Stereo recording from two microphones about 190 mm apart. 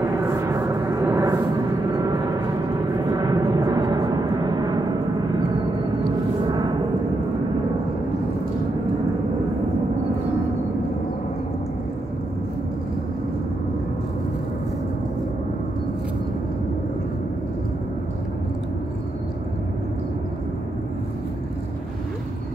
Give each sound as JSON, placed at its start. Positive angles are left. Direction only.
{"t": 0.2, "sound": "a sound", "side_deg": -15}
{"t": 3.1, "sound": "vehicle", "side_deg": -20}
{"t": 6.5, "sound": "gong", "side_deg": -20}